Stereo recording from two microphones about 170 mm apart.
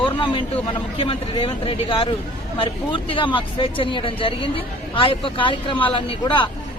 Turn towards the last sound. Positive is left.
turn(degrees=30)  # may be behind; listen again after turning